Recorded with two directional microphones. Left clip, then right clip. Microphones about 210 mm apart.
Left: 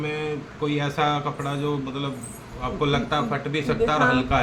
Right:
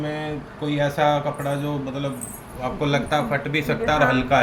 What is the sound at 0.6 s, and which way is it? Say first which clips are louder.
Speech: right 3 dB; 15° left (ahead or behind).